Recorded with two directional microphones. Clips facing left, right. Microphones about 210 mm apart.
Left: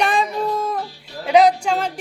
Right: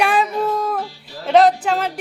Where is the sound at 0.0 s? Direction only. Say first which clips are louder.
Right 2 dB; 5° right (ahead or behind).